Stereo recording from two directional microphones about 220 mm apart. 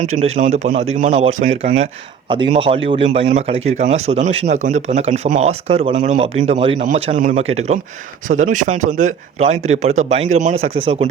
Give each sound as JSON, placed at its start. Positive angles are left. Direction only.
{"t": 0.2, "sound": "speech", "side_deg": -30}